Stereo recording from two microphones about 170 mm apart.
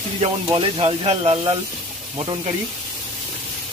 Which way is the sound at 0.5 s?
30° right (ahead or behind).